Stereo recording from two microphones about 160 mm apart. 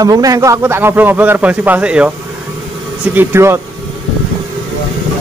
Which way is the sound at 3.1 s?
15° right (ahead or behind).